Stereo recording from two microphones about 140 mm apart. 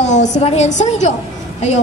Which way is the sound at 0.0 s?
55° left (ahead or behind).